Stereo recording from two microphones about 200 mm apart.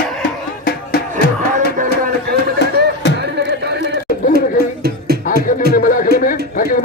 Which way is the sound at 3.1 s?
55° right (ahead or behind).